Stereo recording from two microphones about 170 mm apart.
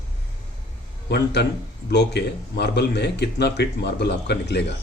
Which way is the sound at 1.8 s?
75° left (ahead or behind).